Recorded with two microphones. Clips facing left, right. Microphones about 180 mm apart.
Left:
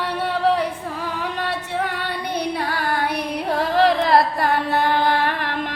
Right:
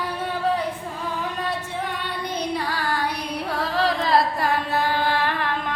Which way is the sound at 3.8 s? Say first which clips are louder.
Left 4 dB; 60° left (ahead or behind).